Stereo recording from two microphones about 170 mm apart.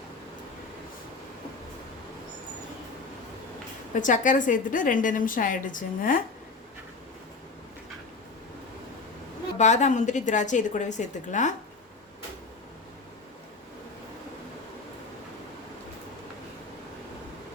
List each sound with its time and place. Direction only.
3.9 s a woman's voice: 50° left (ahead or behind)
9.6 s a woman's voice: 45° left (ahead or behind)